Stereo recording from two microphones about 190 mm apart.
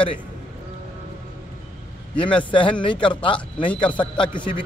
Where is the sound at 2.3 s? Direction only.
25° left (ahead or behind).